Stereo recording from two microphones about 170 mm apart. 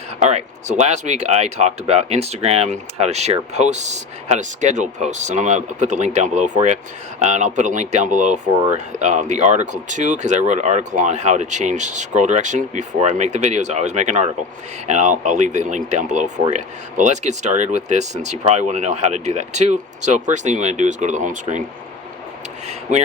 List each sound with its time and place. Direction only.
0.2 s speech: 40° right (ahead or behind)
22.6 s speech: 40° right (ahead or behind)